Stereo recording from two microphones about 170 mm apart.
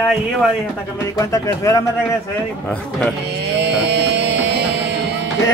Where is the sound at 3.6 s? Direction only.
85° right.